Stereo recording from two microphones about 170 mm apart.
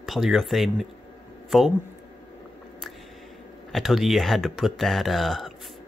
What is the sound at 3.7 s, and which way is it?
Speech, centre (ahead or behind).